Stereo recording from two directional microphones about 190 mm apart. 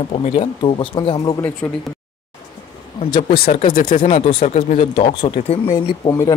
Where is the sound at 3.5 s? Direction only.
45° left (ahead or behind).